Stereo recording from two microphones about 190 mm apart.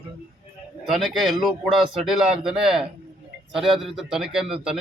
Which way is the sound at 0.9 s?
Centre (ahead or behind).